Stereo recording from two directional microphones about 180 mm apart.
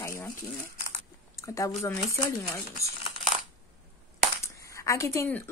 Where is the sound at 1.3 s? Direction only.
15° left (ahead or behind).